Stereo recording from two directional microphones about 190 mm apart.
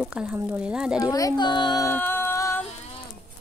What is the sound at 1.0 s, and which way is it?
Music, 20° left (ahead or behind).